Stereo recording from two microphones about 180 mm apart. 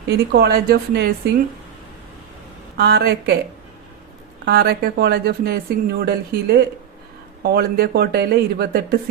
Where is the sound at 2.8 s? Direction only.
65° right (ahead or behind).